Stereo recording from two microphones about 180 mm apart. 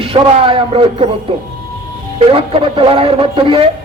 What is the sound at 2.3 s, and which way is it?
Speech, 30° right (ahead or behind).